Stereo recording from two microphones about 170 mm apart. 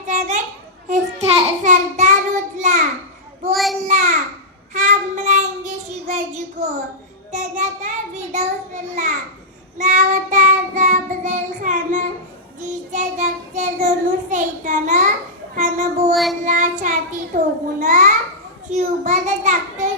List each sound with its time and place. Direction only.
0.0 s children playing: 45° right (ahead or behind)
0.9 s a sound: 40° right (ahead or behind)
1.7 s child singing: 45° right (ahead or behind)
3.5 s child singing: centre (ahead or behind)
3.8 s child singing: 45° right (ahead or behind)
7.8 s child singing: 40° right (ahead or behind)
17.3 s a sound: 45° right (ahead or behind)